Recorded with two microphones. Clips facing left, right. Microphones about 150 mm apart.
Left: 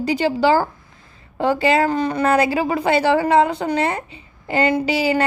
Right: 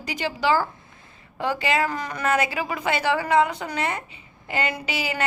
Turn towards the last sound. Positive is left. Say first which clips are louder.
# left 10 dB
turn(degrees=30)  # may be behind; listen again after turning